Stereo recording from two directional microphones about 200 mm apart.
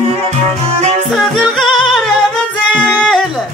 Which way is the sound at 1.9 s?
Centre (ahead or behind).